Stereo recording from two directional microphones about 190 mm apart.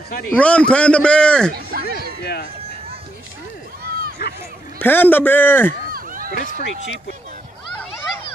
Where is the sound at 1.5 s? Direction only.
55° right (ahead or behind).